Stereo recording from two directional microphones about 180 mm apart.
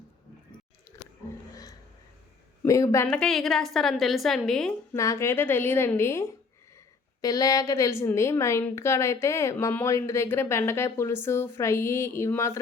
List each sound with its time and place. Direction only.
2.6 s a woman's voice: 20° left (ahead or behind)
3.1 s a woman's voice: 5° left (ahead or behind)
4.9 s a woman's voice: 15° left (ahead or behind)